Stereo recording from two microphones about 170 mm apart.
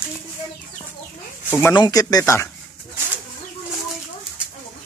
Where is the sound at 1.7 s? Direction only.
20° left (ahead or behind).